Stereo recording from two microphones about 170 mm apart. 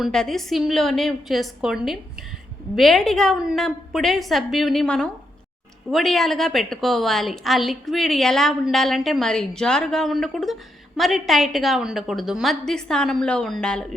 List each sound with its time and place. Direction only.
0.0 s a woman's voice: 5° left (ahead or behind)